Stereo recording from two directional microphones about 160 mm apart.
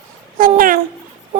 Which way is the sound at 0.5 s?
60° right (ahead or behind).